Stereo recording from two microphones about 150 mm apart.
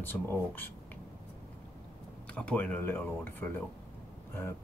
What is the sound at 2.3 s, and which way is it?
Speech, 5° left (ahead or behind).